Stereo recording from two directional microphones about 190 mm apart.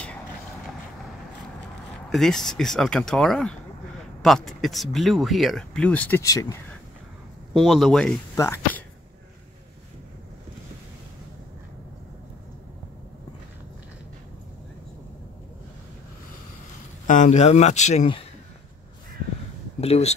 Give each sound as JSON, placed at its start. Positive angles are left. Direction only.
{"t": 2.0, "sound": "speech", "side_deg": 0}
{"t": 7.5, "sound": "speech", "side_deg": 0}
{"t": 8.4, "sound": "speech", "side_deg": 15}
{"t": 17.1, "sound": "speech", "side_deg": 40}
{"t": 19.8, "sound": "speech", "side_deg": 35}